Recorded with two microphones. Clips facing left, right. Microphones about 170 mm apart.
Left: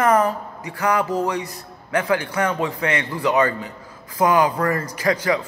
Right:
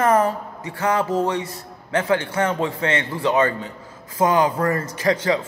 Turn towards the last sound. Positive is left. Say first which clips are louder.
# right 1 dB
turn(degrees=-25)  # may be behind; listen again after turning